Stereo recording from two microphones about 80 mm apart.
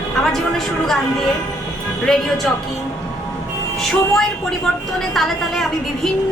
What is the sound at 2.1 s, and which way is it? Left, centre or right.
Speech, centre.